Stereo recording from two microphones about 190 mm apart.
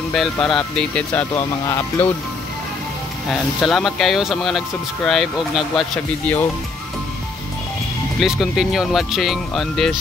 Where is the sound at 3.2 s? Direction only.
Centre (ahead or behind).